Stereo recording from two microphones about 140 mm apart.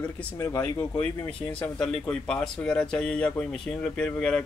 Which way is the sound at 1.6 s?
5° left (ahead or behind).